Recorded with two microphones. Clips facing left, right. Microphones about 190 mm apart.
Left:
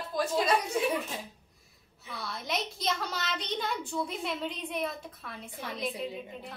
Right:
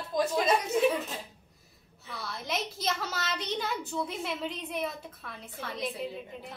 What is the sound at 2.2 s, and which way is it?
A child's voice, centre (ahead or behind).